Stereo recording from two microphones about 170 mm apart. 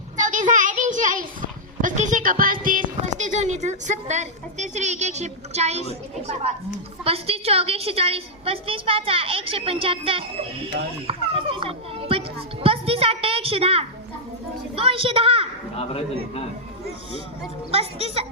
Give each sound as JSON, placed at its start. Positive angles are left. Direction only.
{"t": 0.2, "sound": "a child's voice", "side_deg": -50}
{"t": 11.0, "sound": "children playing", "side_deg": -30}
{"t": 12.6, "sound": "a sound", "side_deg": -35}
{"t": 14.8, "sound": "a woman's voice", "side_deg": -30}
{"t": 15.8, "sound": "a man's voice", "side_deg": 35}
{"t": 17.7, "sound": "a woman's voice", "side_deg": -35}